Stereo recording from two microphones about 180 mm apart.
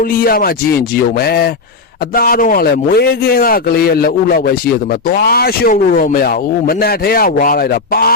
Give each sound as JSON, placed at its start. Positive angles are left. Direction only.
{"t": 0.0, "sound": "a man's voice", "side_deg": 55}